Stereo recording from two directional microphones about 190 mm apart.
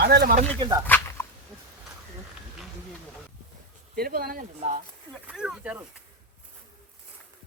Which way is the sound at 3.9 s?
50° right (ahead or behind).